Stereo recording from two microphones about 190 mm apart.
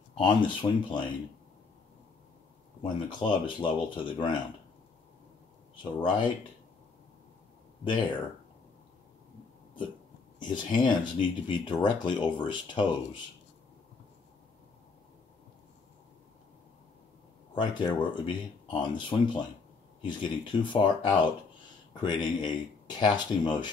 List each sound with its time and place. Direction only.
0.2 s speech: 25° left (ahead or behind)
2.8 s speech: 25° left (ahead or behind)
5.9 s speech: 25° left (ahead or behind)
7.8 s speech: 25° left (ahead or behind)
10.4 s speech: 25° left (ahead or behind)
17.6 s speech: 25° left (ahead or behind)
20.7 s speech: 25° left (ahead or behind)